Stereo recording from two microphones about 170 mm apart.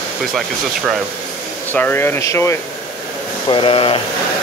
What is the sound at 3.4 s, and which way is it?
Speech, 30° left (ahead or behind).